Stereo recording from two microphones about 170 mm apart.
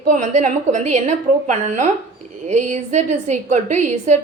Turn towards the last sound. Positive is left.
turn(degrees=-45)  # may be behind; listen again after turning